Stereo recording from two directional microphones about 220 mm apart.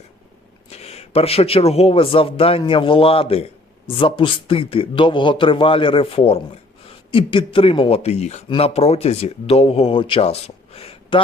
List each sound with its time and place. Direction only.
0.7 s speech: 30° left (ahead or behind)